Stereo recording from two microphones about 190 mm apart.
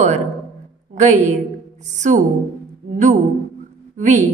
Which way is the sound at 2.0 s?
40° right (ahead or behind).